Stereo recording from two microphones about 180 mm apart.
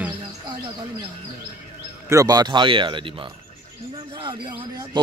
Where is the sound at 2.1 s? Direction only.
20° right (ahead or behind).